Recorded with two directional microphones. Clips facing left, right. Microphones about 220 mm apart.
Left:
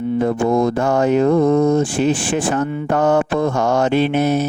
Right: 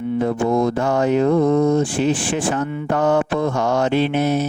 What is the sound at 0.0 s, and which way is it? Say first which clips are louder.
Mantra: left 2 dB; 35° left (ahead or behind).